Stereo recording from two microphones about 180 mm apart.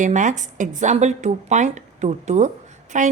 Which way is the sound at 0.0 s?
45° right (ahead or behind).